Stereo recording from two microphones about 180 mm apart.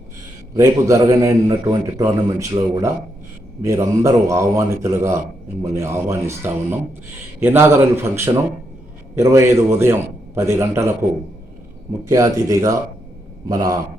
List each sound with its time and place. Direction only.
0.5 s a man's voice: 15° right (ahead or behind)
12.0 s a man's voice: 15° right (ahead or behind)